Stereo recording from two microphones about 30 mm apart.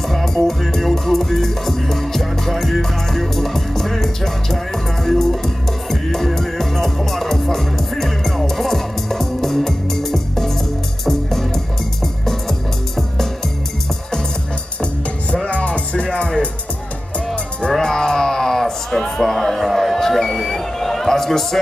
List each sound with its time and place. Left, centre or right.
0.1 s music: centre
15.4 s music: left
17.6 s music: centre
19.4 s a sound: centre